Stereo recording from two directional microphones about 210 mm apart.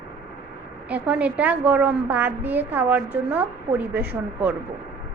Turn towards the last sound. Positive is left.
turn(degrees=-10)  # may be behind; listen again after turning